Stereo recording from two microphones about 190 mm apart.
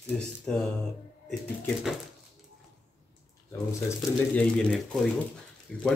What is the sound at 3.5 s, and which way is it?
Speech, 10° left (ahead or behind).